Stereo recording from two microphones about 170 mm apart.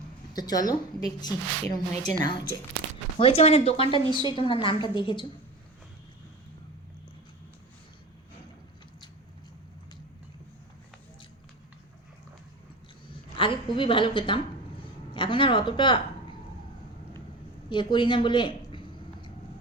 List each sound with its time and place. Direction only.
0.3 s speech: 25° left (ahead or behind)
1.9 s a woman's voice: 5° left (ahead or behind)
3.2 s speech: 35° left (ahead or behind)
13.3 s a woman's voice: 30° left (ahead or behind)
17.7 s speech: 25° left (ahead or behind)